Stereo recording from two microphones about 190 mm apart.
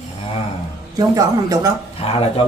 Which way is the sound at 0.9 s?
20° right (ahead or behind).